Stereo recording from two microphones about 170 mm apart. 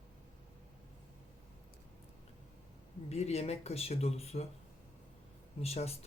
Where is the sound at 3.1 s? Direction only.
40° left (ahead or behind).